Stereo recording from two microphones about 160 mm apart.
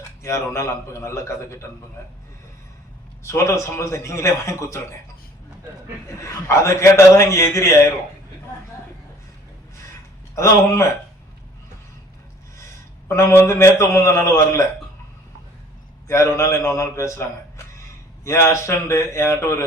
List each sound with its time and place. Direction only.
0.2 s a man's voice: 20° left (ahead or behind)
3.2 s a man's voice: 15° left (ahead or behind)
6.2 s a man's voice: 20° left (ahead or behind)
10.3 s a man's voice: 15° left (ahead or behind)
13.1 s a man's voice: 15° left (ahead or behind)
16.0 s a man's voice: 20° left (ahead or behind)
18.3 s a man's voice: 20° left (ahead or behind)